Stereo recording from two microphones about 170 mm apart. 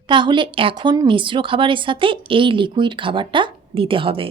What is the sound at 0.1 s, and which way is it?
A woman's voice, 30° right (ahead or behind).